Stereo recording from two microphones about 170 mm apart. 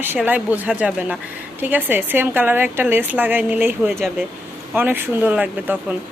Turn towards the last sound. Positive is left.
turn(degrees=-10)  # may be behind; listen again after turning